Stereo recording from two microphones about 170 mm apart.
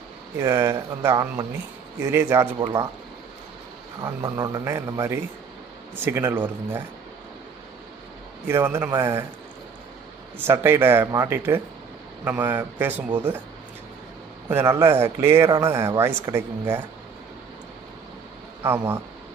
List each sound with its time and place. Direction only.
0.3 s speech: 15° right (ahead or behind)
2.6 s a man's voice: 30° right (ahead or behind)
4.0 s a man's voice: 20° right (ahead or behind)
8.4 s speech: 15° right (ahead or behind)
10.3 s speech: 15° right (ahead or behind)
14.5 s speech: 15° right (ahead or behind)